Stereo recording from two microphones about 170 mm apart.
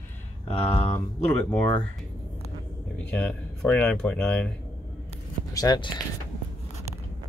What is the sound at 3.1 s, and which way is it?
Speech, 10° left (ahead or behind).